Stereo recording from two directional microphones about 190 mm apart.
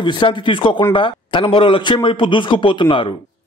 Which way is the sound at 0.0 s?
25° left (ahead or behind).